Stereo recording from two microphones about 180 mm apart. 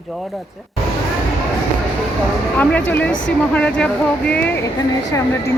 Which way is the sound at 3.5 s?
5° left (ahead or behind).